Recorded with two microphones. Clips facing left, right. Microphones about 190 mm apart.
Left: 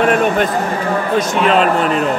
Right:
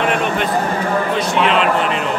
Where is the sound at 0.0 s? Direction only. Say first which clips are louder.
Left 5 dB; 45° left (ahead or behind).